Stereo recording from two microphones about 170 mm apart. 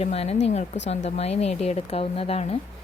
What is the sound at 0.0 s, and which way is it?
A woman's voice, 40° left (ahead or behind).